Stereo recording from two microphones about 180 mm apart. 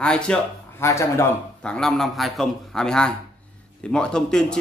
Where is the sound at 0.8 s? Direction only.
15° left (ahead or behind).